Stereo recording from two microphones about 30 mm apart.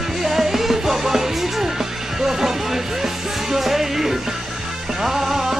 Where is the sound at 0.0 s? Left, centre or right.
Centre.